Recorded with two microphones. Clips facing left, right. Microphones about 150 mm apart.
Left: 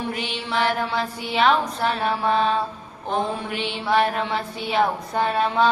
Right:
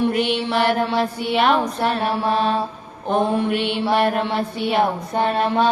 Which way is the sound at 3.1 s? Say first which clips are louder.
Right 6 dB; 55° right (ahead or behind).